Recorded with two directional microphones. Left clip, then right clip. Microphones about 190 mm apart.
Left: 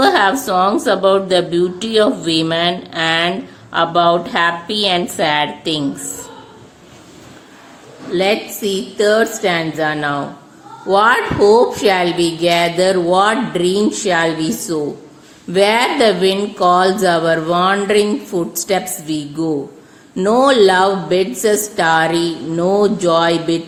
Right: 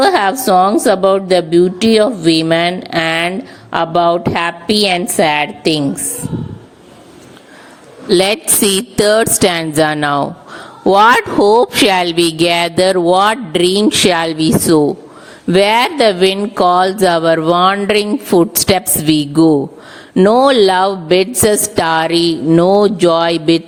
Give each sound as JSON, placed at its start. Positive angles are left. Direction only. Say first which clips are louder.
{"t": 0.0, "sound": "a woman's voice", "louder": "right 1 dB", "side_deg": -40}
{"t": 8.1, "sound": "speech", "louder": "right 4 dB", "side_deg": -65}